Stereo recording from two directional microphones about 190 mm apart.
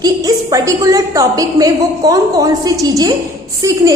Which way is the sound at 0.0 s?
20° right (ahead or behind).